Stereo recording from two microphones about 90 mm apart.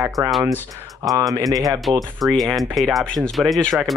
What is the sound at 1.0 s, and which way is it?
Speech, 40° right (ahead or behind).